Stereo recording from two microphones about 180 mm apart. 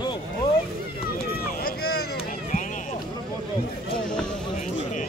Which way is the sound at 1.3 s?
60° left (ahead or behind).